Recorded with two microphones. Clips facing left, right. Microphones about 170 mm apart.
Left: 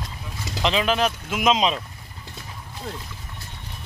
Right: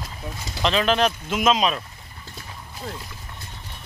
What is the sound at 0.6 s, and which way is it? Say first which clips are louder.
Speech: right 1 dB; 10° left (ahead or behind).